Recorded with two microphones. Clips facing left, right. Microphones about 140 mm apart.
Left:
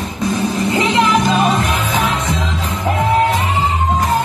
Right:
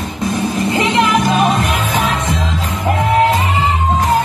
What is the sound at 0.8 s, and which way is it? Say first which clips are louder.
Music: even; 20° right (ahead or behind).